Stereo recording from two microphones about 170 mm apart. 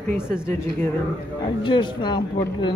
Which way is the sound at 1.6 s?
30° left (ahead or behind).